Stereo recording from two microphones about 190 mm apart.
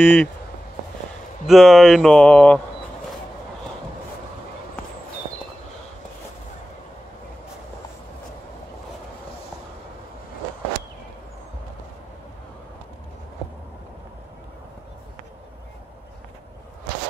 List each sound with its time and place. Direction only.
0.0 s speech: 5° left (ahead or behind)
1.5 s speech: centre (ahead or behind)